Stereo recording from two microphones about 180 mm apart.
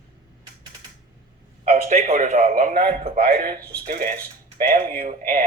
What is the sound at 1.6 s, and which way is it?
Speech, 40° right (ahead or behind).